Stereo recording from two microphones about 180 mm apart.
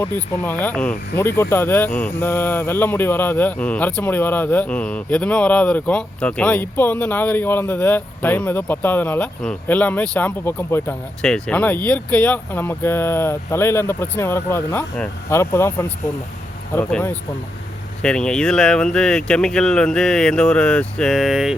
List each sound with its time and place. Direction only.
0.0 s speech: 10° left (ahead or behind)